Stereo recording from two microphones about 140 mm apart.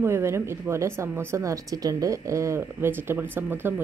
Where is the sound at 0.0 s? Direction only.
20° right (ahead or behind).